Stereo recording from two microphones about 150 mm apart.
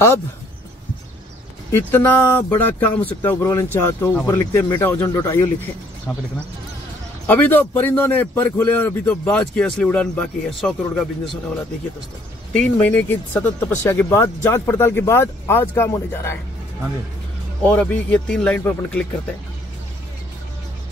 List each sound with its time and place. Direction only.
1.7 s speech: 10° left (ahead or behind)
6.1 s speech: centre (ahead or behind)
7.2 s speech: 10° left (ahead or behind)
12.5 s speech: 10° left (ahead or behind)
17.6 s speech: 10° left (ahead or behind)